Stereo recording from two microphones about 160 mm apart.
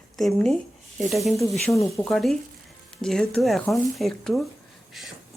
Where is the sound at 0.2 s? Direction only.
Centre (ahead or behind).